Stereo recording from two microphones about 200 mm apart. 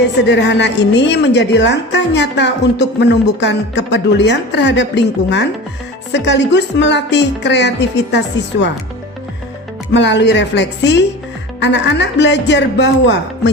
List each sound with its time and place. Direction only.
0.3 s a woman's voice: 60° left (ahead or behind)
9.9 s a woman's voice: 60° left (ahead or behind)